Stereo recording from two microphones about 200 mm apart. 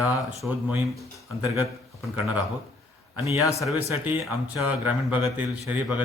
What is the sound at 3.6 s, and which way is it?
Speech, centre (ahead or behind).